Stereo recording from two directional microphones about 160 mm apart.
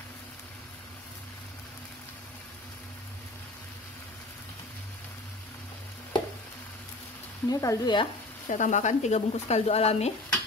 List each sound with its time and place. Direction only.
7.4 s speech: 20° left (ahead or behind)
8.5 s speech: 50° left (ahead or behind)